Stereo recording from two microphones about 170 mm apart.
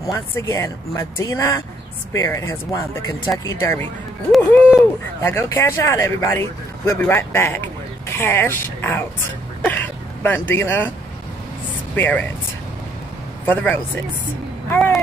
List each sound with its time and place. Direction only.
0.0 s speech: 15° left (ahead or behind)
9.6 s a sound: 10° left (ahead or behind)
11.9 s speech: 10° left (ahead or behind)
13.5 s speech: 10° left (ahead or behind)